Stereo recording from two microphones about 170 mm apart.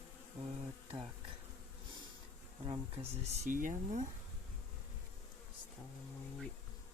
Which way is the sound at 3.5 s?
50° right (ahead or behind).